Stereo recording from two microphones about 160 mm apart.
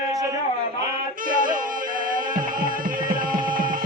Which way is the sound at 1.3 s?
55° right (ahead or behind).